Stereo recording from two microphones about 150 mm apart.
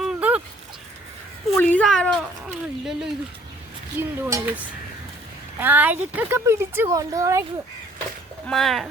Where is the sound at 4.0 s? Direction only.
15° right (ahead or behind).